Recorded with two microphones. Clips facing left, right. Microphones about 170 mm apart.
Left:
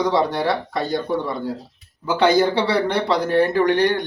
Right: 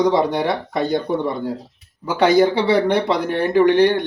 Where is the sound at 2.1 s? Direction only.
10° right (ahead or behind).